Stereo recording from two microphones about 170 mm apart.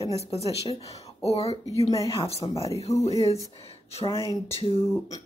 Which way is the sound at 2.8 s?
35° left (ahead or behind).